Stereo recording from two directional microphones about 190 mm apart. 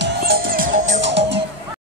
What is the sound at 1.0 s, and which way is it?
Music, 70° right (ahead or behind).